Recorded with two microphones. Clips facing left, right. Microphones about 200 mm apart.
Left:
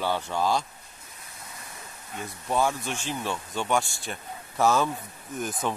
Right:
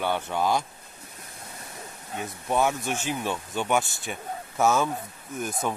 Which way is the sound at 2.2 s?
20° right (ahead or behind).